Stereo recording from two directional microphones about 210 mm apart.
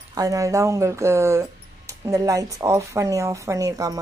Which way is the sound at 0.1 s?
15° right (ahead or behind).